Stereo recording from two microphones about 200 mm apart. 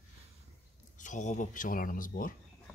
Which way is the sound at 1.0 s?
40° left (ahead or behind).